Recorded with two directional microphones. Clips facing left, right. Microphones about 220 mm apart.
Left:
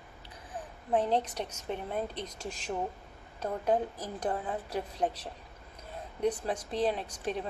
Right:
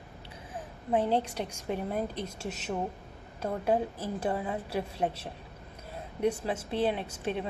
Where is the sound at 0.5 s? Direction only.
10° right (ahead or behind).